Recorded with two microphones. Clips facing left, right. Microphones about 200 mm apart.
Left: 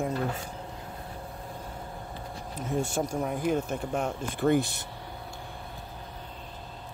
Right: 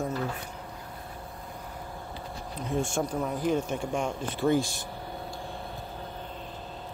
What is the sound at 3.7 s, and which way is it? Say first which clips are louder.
Speech: even; 5° left (ahead or behind).